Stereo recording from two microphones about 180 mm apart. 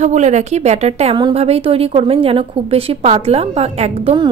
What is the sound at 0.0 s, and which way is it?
A woman's voice, 40° right (ahead or behind).